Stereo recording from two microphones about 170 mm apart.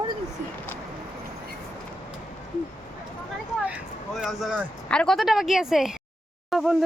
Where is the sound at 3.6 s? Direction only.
5° right (ahead or behind).